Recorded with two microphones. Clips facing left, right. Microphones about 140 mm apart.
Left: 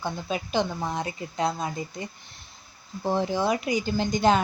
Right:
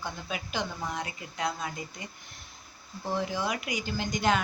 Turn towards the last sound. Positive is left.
turn(degrees=30)  # may be behind; listen again after turning